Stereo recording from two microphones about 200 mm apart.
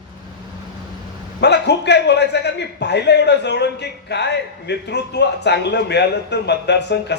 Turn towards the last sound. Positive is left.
turn(degrees=60)  # may be behind; listen again after turning